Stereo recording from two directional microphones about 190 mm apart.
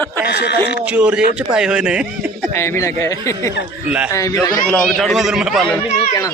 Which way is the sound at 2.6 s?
15° left (ahead or behind).